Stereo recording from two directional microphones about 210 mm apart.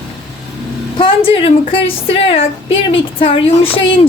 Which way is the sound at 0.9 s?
25° left (ahead or behind).